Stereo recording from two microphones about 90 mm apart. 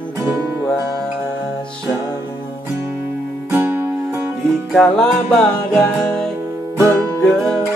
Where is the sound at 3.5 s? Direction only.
25° right (ahead or behind).